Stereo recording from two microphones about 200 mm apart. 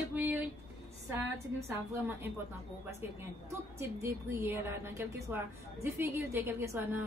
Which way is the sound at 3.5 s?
15° right (ahead or behind).